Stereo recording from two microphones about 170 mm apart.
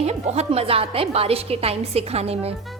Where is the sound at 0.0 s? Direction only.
40° right (ahead or behind).